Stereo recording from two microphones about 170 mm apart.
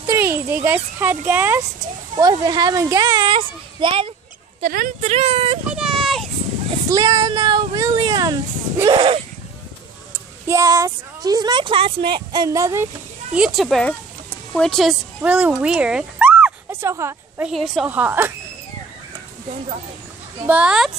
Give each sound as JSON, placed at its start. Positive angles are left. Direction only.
{"t": 0.0, "sound": "a sound", "side_deg": -15}
{"t": 0.9, "sound": "speech", "side_deg": -10}
{"t": 2.1, "sound": "speech", "side_deg": -25}
{"t": 4.6, "sound": "speech", "side_deg": -55}
{"t": 5.7, "sound": "a sound", "side_deg": 0}
{"t": 6.9, "sound": "speech", "side_deg": -25}
{"t": 10.4, "sound": "speech", "side_deg": -15}
{"t": 13.3, "sound": "a woman's voice", "side_deg": 0}
{"t": 17.5, "sound": "speech", "side_deg": 0}
{"t": 20.4, "sound": "speech", "side_deg": -5}